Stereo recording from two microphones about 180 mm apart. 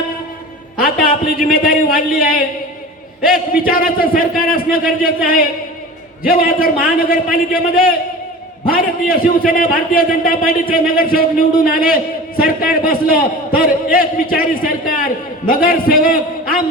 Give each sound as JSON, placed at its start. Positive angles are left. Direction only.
{"t": 0.9, "sound": "a man's voice", "side_deg": 55}
{"t": 3.5, "sound": "a man's voice", "side_deg": 55}